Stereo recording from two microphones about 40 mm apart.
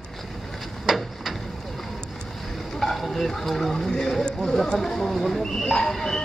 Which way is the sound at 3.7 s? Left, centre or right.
Centre.